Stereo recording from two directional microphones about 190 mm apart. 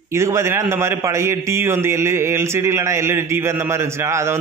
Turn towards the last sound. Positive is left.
turn(degrees=-15)  # may be behind; listen again after turning